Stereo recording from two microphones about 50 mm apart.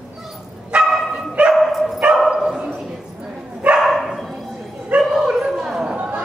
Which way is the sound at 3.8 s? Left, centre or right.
Centre.